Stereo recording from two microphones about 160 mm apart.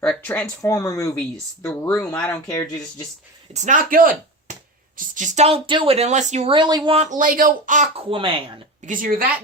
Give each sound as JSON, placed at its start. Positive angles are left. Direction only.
{"t": 0.0, "sound": "speech", "side_deg": 5}
{"t": 0.6, "sound": "speech", "side_deg": 20}
{"t": 3.5, "sound": "speech", "side_deg": -50}
{"t": 6.5, "sound": "speech", "side_deg": -25}
{"t": 6.9, "sound": "speech", "side_deg": -50}
{"t": 7.9, "sound": "speech", "side_deg": -35}
{"t": 8.9, "sound": "speech", "side_deg": -60}